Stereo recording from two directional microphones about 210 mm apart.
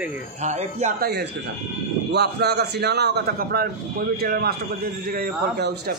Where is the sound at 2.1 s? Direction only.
50° right (ahead or behind).